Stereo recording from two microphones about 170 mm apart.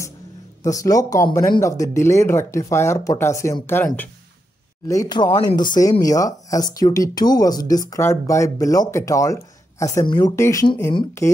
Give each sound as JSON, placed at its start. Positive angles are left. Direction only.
{"t": 0.7, "sound": "speech", "side_deg": 20}